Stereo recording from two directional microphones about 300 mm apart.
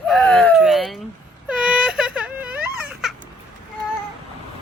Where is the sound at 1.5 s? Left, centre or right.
Centre.